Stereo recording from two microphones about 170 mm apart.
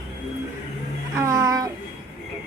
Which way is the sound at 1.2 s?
20° right (ahead or behind).